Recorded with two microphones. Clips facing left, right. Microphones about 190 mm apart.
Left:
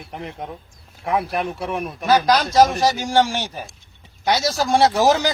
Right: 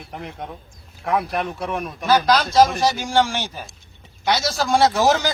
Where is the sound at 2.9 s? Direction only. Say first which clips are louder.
Left 1 dB; 40° left (ahead or behind).